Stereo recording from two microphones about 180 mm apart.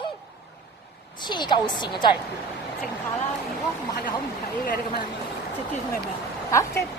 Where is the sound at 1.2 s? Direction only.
25° left (ahead or behind).